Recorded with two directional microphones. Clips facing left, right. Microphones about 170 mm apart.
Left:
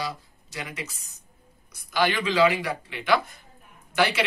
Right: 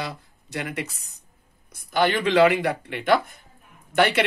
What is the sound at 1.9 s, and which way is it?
Speech, 55° right (ahead or behind).